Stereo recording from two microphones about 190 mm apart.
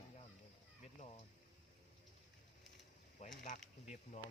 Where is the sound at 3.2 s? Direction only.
35° left (ahead or behind).